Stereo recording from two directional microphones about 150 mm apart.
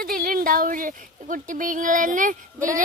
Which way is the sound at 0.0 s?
75° right (ahead or behind).